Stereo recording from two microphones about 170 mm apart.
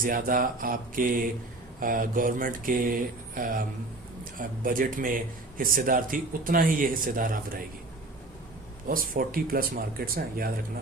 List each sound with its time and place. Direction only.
0.0 s a man's voice: 55° right (ahead or behind)
8.9 s a man's voice: 55° right (ahead or behind)